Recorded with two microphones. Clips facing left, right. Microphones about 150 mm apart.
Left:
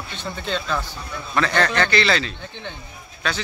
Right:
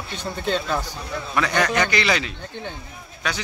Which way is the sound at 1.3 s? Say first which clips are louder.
Left 1 dB; 10° right (ahead or behind).